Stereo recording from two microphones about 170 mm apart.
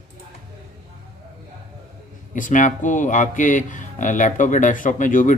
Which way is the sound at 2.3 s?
50° left (ahead or behind).